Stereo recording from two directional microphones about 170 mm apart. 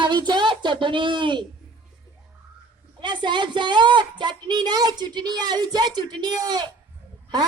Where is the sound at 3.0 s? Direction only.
25° right (ahead or behind).